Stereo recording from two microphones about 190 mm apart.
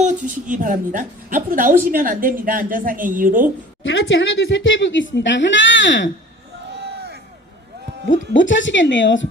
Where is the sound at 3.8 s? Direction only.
80° left.